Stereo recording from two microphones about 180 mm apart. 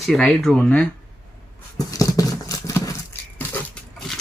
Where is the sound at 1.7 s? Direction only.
20° left (ahead or behind).